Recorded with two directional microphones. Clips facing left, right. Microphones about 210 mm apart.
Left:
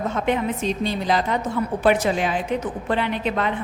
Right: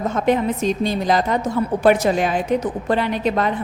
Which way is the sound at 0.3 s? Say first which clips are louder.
Right 5 dB; 45° right (ahead or behind).